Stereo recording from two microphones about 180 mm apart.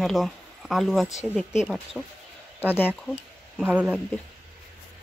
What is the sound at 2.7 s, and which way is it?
Speech, 10° left (ahead or behind).